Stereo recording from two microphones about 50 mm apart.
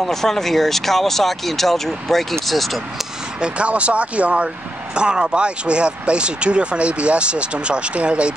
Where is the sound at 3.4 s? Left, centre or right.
Right.